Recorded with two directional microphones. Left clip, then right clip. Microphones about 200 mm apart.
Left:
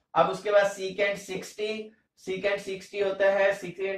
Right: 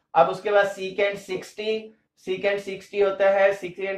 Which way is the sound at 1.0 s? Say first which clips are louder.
Right 4 dB; 35° right (ahead or behind).